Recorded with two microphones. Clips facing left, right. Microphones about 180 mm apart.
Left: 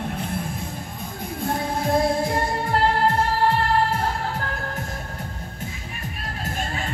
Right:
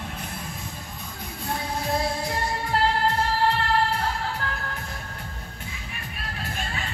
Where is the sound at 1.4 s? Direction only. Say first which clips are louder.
Left 5 dB; 50° left (ahead or behind).